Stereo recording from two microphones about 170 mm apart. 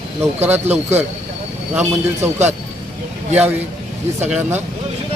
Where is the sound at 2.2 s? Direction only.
15° right (ahead or behind).